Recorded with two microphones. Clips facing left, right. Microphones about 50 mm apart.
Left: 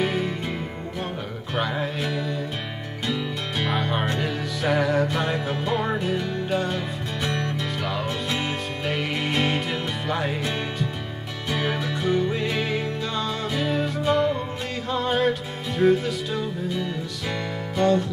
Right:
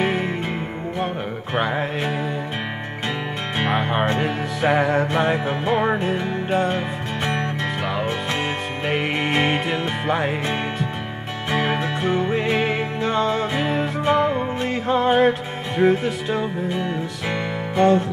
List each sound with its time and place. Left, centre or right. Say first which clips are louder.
0.0 s music: right 3 dB; right
1.5 s music: right 4 dB; right
11.5 s music: right 4 dB; right